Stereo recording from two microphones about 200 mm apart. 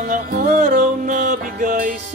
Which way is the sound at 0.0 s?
45° right (ahead or behind).